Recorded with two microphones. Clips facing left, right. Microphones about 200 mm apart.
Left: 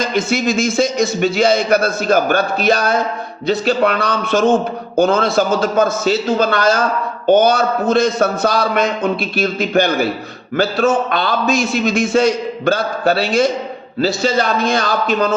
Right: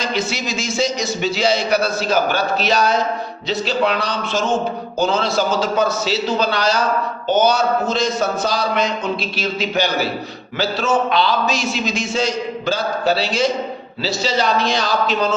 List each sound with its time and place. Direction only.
0.0 s a man's voice: 50° left (ahead or behind)